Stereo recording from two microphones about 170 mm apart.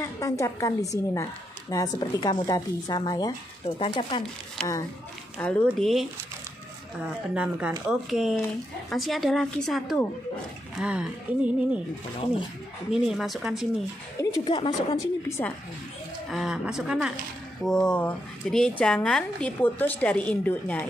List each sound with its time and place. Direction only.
0.0 s a woman's voice: 15° left (ahead or behind)
4.6 s speech: 5° left (ahead or behind)
12.9 s speech: 5° right (ahead or behind)
14.4 s a woman's voice: 30° left (ahead or behind)
15.2 s a woman's voice: 15° left (ahead or behind)
16.3 s a woman's voice: centre (ahead or behind)